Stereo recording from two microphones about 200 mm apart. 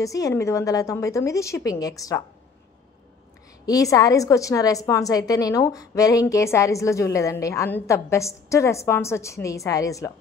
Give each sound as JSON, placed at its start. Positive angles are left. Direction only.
{"t": 0.0, "sound": "a woman's voice", "side_deg": 15}
{"t": 3.6, "sound": "a woman's voice", "side_deg": 15}